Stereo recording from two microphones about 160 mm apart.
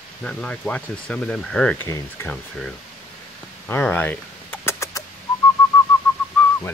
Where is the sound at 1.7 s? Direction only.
15° left (ahead or behind).